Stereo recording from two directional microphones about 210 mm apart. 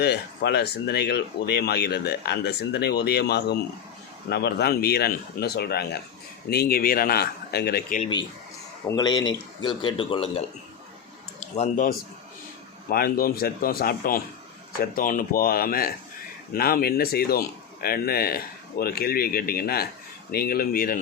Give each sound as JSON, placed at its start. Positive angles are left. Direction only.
{"t": 0.0, "sound": "speech", "side_deg": 50}
{"t": 8.9, "sound": "speech", "side_deg": 20}